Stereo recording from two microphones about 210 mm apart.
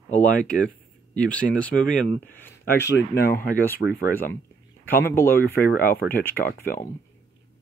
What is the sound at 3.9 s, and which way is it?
Speech, 45° left (ahead or behind).